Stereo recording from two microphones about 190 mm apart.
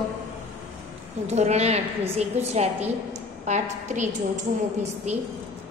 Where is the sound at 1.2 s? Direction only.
35° right (ahead or behind).